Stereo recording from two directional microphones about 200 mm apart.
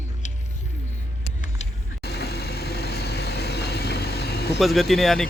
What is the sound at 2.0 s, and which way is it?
Vehicle, 55° left (ahead or behind).